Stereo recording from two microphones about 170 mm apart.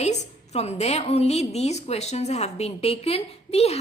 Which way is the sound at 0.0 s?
40° left (ahead or behind).